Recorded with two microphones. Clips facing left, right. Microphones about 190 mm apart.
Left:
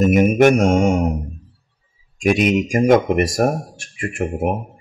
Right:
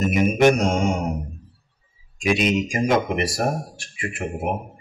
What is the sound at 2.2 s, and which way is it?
Speech, 45° left (ahead or behind).